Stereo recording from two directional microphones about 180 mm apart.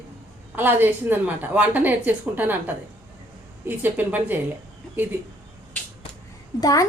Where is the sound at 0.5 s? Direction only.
10° right (ahead or behind).